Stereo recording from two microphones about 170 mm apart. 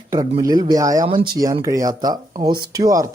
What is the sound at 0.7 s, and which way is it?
Speech, 20° right (ahead or behind).